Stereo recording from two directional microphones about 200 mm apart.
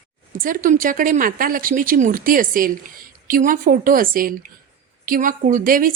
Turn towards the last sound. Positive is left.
turn(degrees=-45)  # may be behind; listen again after turning